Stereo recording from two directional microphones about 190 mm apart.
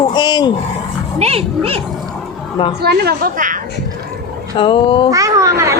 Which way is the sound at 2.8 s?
55° right (ahead or behind).